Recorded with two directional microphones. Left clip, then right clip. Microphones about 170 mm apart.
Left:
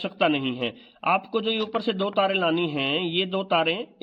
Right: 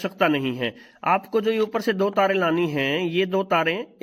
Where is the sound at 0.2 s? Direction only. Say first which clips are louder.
Right 1 dB; 15° right (ahead or behind).